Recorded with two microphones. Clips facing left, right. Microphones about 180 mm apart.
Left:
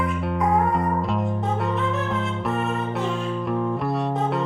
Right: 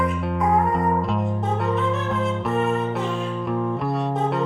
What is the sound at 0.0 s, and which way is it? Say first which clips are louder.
Music: right 1 dB; centre (ahead or behind).